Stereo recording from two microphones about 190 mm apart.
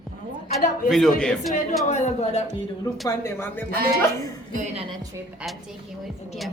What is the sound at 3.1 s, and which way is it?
Speech, 15° left (ahead or behind).